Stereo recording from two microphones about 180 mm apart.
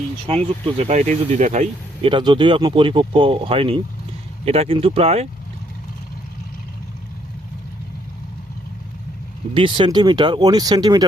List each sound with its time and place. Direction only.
0.3 s speech: 35° right (ahead or behind)
9.6 s speech: 30° right (ahead or behind)